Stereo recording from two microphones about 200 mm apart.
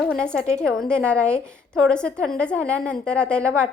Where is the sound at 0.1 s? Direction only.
5° left (ahead or behind).